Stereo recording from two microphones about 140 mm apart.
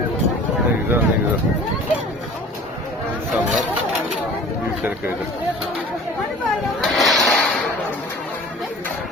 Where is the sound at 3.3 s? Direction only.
Centre (ahead or behind).